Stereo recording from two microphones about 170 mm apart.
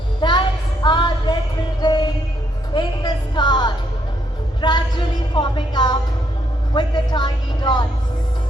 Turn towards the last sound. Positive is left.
turn(degrees=25)  # may be behind; listen again after turning